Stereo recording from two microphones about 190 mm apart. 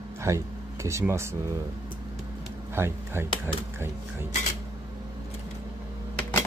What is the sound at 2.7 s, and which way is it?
Speech, 10° right (ahead or behind).